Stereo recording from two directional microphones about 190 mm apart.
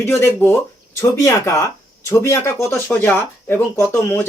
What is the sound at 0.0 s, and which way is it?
Speech, 15° left (ahead or behind).